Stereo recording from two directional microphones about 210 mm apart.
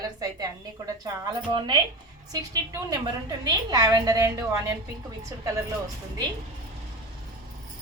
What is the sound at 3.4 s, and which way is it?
A woman's voice, 20° right (ahead or behind).